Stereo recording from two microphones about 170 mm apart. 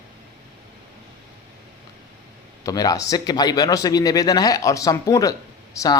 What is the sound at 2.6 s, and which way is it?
Speech, 20° left (ahead or behind).